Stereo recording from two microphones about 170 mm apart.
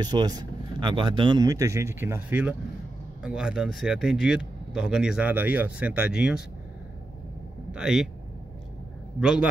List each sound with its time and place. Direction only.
0.0 s speech: 25° right (ahead or behind); by 6.4 s 5° right (ahead or behind)
7.7 s speech: 5° right (ahead or behind)
9.2 s speech: 5° right (ahead or behind)